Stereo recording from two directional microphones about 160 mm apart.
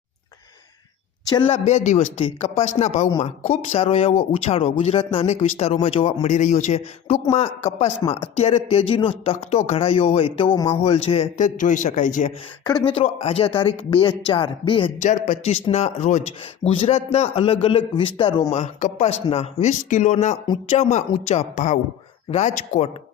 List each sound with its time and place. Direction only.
1.2 s a man's voice: 25° left (ahead or behind)
1.5 s a man's voice: 45° left (ahead or behind)
6.2 s a man's voice: 50° left (ahead or behind)
12.6 s speech: 25° left (ahead or behind)
12.9 s a man's voice: 40° left (ahead or behind)
15.0 s a man's voice: 45° left (ahead or behind)
18.5 s speech: 45° left (ahead or behind)